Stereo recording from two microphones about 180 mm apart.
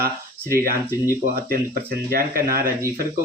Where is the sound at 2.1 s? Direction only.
55° right (ahead or behind).